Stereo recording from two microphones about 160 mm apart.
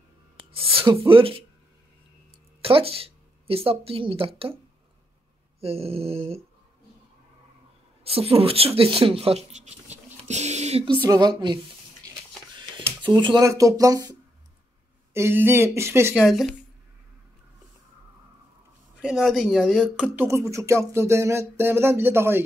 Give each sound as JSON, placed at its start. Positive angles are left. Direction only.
{"t": 0.5, "sound": "speech", "side_deg": -35}
{"t": 2.6, "sound": "speech", "side_deg": -35}
{"t": 5.6, "sound": "speech", "side_deg": -40}
{"t": 8.0, "sound": "speech", "side_deg": -35}
{"t": 11.1, "sound": "a sound", "side_deg": -25}
{"t": 13.0, "sound": "speech", "side_deg": -30}
{"t": 15.1, "sound": "speech", "side_deg": -15}
{"t": 16.2, "sound": "speech", "side_deg": 0}
{"t": 18.9, "sound": "speech", "side_deg": -5}
{"t": 20.2, "sound": "speech", "side_deg": -20}